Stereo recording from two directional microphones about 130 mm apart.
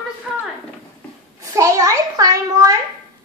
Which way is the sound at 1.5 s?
25° right (ahead or behind).